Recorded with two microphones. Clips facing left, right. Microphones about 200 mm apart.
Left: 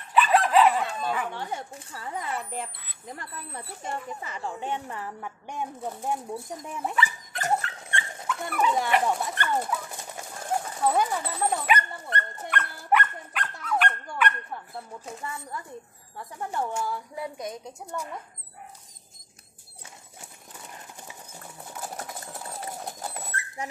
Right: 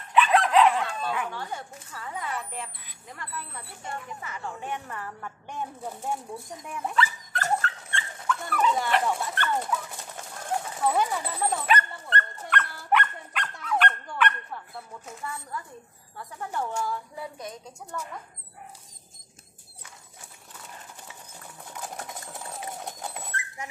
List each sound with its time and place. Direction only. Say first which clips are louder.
0.1 s dog: even; 5° left (ahead or behind)
1.3 s speech: left 2 dB; 20° left (ahead or behind)
6.7 s dog: right 2 dB; 20° left (ahead or behind)
16.5 s speech: even; 15° left (ahead or behind)
21.6 s sewing machine: left 1 dB; 5° left (ahead or behind)
22.3 s dog: left 1 dB; centre (ahead or behind)